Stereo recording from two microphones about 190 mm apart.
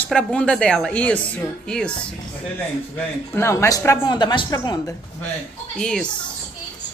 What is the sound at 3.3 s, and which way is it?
Speech, 15° left (ahead or behind).